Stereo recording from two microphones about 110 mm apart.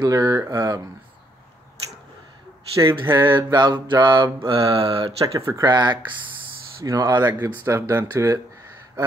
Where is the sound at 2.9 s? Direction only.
45° right (ahead or behind).